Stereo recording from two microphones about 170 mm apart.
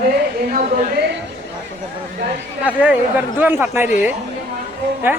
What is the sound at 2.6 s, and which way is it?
Speech, 10° right (ahead or behind).